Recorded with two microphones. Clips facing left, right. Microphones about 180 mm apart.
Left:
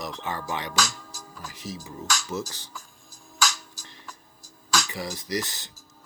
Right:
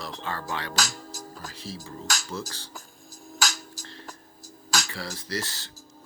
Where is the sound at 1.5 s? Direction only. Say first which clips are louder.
Left 4 dB; 20° left (ahead or behind).